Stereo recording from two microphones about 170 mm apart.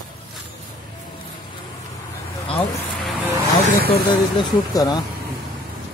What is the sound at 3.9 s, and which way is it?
Speech, 25° left (ahead or behind).